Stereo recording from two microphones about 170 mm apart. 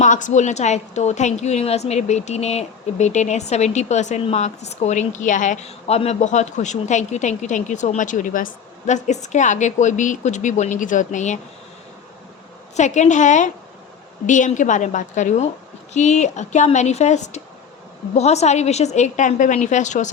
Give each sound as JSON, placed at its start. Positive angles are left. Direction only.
{"t": 0.0, "sound": "a woman's voice", "side_deg": 45}
{"t": 12.7, "sound": "a woman's voice", "side_deg": 45}